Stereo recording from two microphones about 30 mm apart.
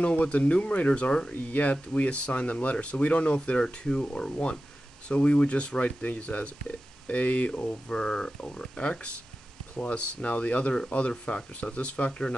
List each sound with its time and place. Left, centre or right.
0.2 s speech: left
1.3 s speech: left
3.5 s speech: left
5.5 s speech: left
7.9 s speech: left
8.5 s speech: left
9.8 s speech: left